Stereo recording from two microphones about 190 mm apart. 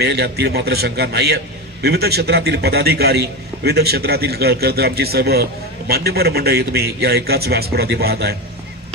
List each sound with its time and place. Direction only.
0.0 s a man's voice: 60° right (ahead or behind)